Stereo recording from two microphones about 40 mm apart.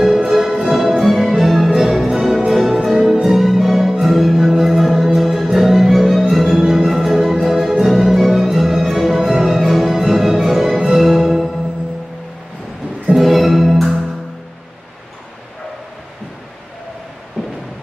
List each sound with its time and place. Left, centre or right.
0.0 s music: centre
13.1 s music: centre